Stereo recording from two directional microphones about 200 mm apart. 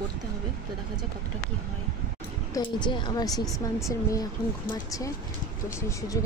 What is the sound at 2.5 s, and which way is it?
A woman's voice, 20° left (ahead or behind).